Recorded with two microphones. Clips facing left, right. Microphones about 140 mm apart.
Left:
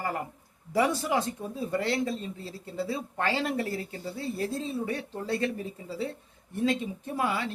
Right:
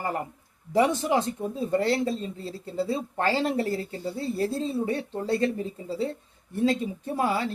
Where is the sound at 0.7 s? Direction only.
25° right (ahead or behind).